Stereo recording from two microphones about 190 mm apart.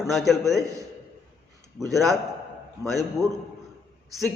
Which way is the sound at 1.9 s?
Centre (ahead or behind).